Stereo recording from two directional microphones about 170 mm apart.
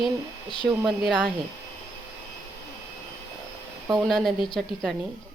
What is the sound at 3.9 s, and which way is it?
Speech, centre (ahead or behind).